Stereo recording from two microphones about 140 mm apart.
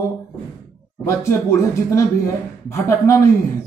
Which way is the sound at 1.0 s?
20° left (ahead or behind).